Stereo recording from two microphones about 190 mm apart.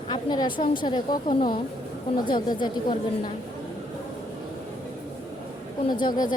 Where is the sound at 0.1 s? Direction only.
20° left (ahead or behind).